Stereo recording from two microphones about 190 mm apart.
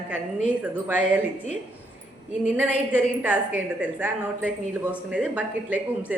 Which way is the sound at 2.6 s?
10° right (ahead or behind).